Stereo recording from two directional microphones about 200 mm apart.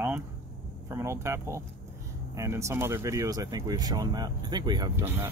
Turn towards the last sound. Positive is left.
turn(degrees=-15)  # may be behind; listen again after turning